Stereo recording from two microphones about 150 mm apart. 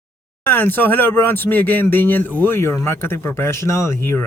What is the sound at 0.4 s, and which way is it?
Speech, 10° left (ahead or behind).